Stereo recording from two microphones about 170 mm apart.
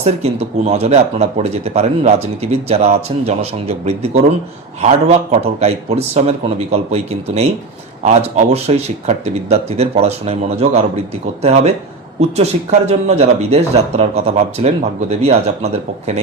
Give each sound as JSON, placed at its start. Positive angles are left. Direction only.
{"t": 0.0, "sound": "speech", "side_deg": -40}
{"t": 12.4, "sound": "speech", "side_deg": -40}